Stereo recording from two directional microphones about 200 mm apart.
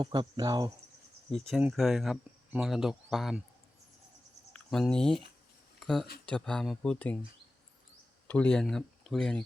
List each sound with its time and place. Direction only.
0.0 s speech: 20° right (ahead or behind)
1.3 s speech: 5° left (ahead or behind)
4.5 s speech: 5° left (ahead or behind)
8.3 s speech: 5° left (ahead or behind)